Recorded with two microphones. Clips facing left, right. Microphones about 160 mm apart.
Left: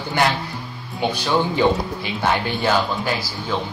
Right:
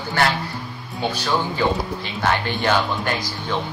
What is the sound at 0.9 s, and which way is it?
Speech, 15° left (ahead or behind).